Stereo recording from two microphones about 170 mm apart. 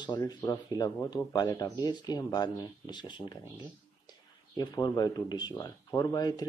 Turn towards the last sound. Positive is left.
turn(degrees=20)  # may be behind; listen again after turning